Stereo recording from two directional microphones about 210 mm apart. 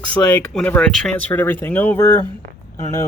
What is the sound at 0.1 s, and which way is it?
Speech, 5° left (ahead or behind).